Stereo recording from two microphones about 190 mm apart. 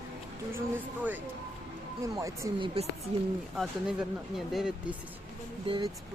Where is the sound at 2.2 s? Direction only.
15° right (ahead or behind).